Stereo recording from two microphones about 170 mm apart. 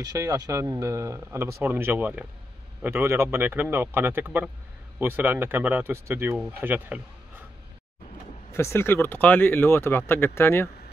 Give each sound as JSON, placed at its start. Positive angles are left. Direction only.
{"t": 0.0, "sound": "speech", "side_deg": -20}
{"t": 8.5, "sound": "speech", "side_deg": 15}